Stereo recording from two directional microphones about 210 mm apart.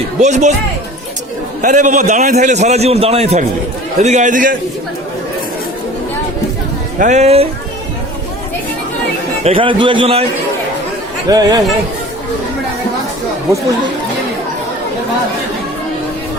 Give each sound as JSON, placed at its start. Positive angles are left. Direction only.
{"t": 0.2, "sound": "a man's voice", "side_deg": -35}
{"t": 1.6, "sound": "a man's voice", "side_deg": -35}
{"t": 7.0, "sound": "a man's voice", "side_deg": -35}
{"t": 9.4, "sound": "a man's voice", "side_deg": -25}
{"t": 11.3, "sound": "speech", "side_deg": -15}